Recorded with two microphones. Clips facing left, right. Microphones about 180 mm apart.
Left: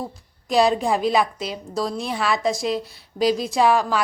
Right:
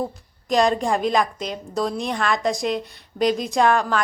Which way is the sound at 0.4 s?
5° left (ahead or behind).